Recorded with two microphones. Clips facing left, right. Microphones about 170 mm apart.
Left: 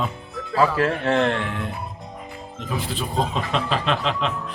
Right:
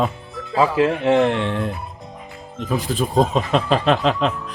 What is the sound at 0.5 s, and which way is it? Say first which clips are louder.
Speech: right 3 dB; 15° right (ahead or behind).